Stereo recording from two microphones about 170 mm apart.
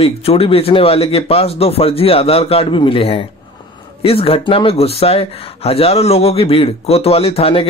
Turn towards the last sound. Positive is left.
turn(degrees=35)  # may be behind; listen again after turning